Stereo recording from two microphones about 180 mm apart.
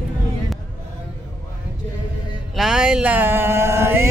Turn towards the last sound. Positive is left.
turn(degrees=-15)  # may be behind; listen again after turning